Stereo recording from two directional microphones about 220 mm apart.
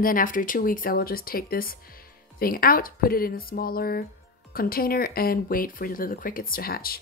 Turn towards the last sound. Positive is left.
turn(degrees=40)  # may be behind; listen again after turning